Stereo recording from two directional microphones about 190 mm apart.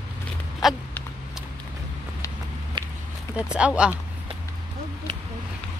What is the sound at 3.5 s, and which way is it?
Speech, 5° right (ahead or behind).